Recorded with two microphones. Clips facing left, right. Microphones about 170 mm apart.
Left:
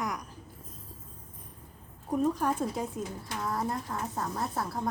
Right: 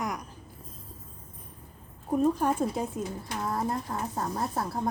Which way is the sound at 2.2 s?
25° right (ahead or behind).